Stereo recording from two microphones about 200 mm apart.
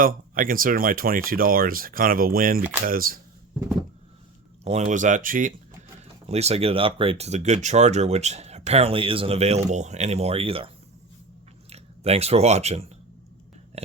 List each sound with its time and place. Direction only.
0.0 s speech: 45° right (ahead or behind)
4.6 s speech: 35° right (ahead or behind)
6.2 s speech: 30° right (ahead or behind)
11.7 s speech: 30° right (ahead or behind)